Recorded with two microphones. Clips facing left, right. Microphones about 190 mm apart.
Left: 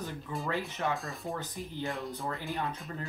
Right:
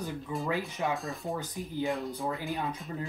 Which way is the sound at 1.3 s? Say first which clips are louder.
Right 1 dB; 10° right (ahead or behind).